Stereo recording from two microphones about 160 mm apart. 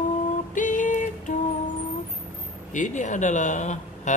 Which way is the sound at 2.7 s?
50° left (ahead or behind).